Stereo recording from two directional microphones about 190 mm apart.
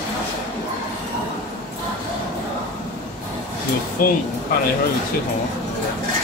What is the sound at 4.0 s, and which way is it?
Speech, 50° left (ahead or behind).